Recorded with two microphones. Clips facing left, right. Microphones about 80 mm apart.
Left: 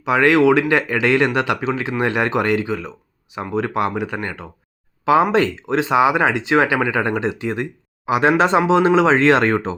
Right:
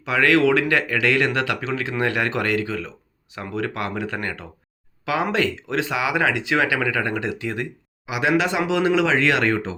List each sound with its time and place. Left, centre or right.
0.0 s speech: left
5.0 s speech: left
8.0 s speech: left